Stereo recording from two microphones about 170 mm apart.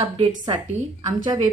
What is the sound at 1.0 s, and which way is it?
Speech, 25° right (ahead or behind).